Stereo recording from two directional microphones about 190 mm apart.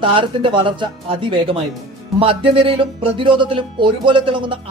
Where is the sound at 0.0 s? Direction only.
25° right (ahead or behind).